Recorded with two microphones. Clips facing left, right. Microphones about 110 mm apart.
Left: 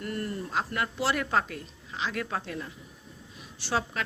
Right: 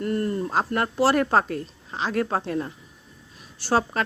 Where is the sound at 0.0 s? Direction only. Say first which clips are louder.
Right 8 dB; 40° right (ahead or behind).